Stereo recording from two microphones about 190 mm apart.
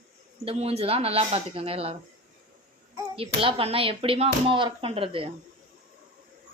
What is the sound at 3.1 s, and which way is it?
Speech, 30° right (ahead or behind).